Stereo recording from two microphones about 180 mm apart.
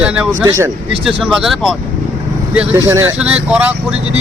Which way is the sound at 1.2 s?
5° right (ahead or behind).